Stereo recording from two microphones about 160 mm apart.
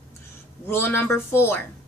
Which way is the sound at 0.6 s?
15° left (ahead or behind).